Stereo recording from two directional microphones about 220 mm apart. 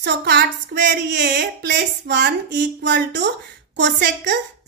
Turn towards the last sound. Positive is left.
turn(degrees=-55)  # may be behind; listen again after turning